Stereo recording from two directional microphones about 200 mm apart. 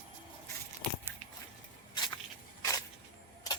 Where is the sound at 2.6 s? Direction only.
15° left (ahead or behind).